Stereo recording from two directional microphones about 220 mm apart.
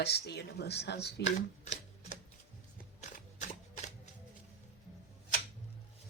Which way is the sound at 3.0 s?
30° left (ahead or behind).